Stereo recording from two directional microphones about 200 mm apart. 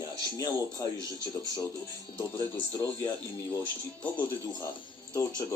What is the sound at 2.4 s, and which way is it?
Speech, 20° left (ahead or behind).